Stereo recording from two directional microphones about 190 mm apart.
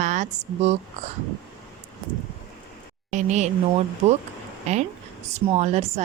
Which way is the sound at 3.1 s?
40° right (ahead or behind).